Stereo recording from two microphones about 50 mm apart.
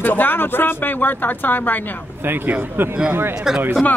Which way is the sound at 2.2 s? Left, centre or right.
Right.